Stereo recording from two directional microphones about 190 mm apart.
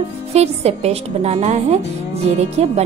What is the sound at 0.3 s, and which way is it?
A woman's voice, 35° right (ahead or behind).